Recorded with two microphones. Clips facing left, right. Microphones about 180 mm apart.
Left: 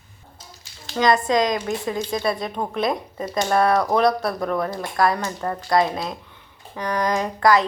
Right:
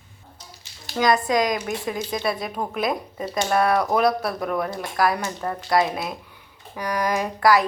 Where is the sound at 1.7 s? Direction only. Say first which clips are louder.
Left 2 dB; 15° right (ahead or behind).